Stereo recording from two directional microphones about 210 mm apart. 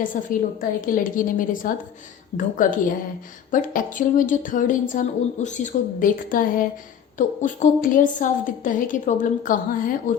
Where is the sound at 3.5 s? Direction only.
40° left (ahead or behind).